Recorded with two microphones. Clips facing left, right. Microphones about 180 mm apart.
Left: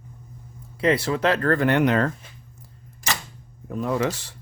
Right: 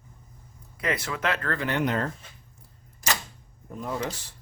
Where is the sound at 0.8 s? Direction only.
30° left (ahead or behind); by 2.1 s 90° left.